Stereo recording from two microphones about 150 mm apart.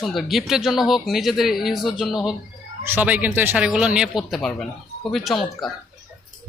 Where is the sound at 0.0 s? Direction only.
Centre (ahead or behind).